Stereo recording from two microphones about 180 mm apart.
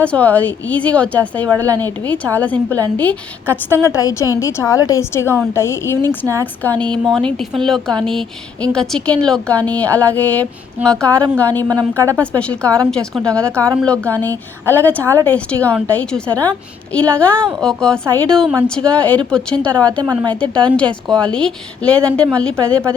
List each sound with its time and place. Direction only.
0.0 s a woman's voice: 10° left (ahead or behind)